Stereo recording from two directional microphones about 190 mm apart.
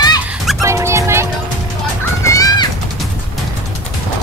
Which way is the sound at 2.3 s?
20° left (ahead or behind).